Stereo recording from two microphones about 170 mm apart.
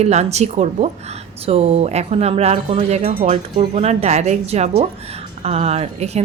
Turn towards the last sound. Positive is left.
turn(degrees=-40)  # may be behind; listen again after turning